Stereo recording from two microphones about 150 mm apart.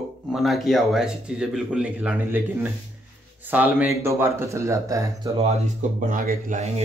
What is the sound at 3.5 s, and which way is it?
A man's voice, 10° right (ahead or behind).